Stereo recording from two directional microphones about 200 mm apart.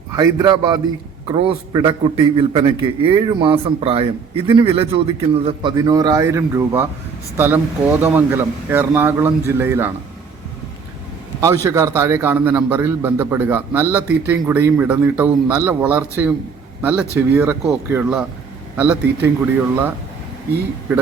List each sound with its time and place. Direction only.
0.2 s a man's voice: 20° right (ahead or behind)
5.7 s a man's voice: 15° right (ahead or behind)
11.3 s a man's voice: 15° right (ahead or behind)
20.9 s a man's voice: 5° right (ahead or behind)